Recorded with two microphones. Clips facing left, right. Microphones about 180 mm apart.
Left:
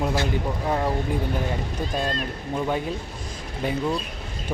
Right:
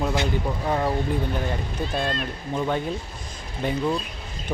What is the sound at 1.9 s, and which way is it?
Speech, 40° left (ahead or behind).